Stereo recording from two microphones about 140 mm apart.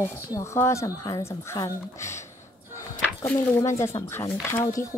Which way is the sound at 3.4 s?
20° left (ahead or behind).